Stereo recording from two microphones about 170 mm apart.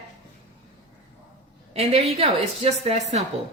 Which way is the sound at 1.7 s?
35° right (ahead or behind).